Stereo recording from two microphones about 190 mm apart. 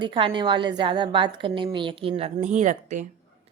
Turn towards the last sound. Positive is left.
turn(degrees=-40)  # may be behind; listen again after turning